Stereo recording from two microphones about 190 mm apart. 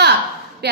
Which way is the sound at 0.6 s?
60° right (ahead or behind).